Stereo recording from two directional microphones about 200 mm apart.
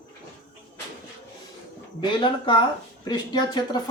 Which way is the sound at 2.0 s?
25° left (ahead or behind).